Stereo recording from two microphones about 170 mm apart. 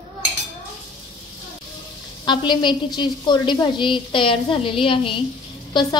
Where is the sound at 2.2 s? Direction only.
25° left (ahead or behind).